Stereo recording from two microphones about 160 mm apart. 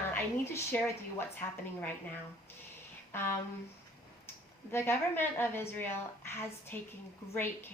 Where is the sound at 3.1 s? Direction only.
15° left (ahead or behind).